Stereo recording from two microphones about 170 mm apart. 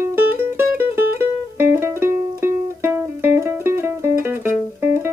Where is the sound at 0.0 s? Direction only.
10° right (ahead or behind).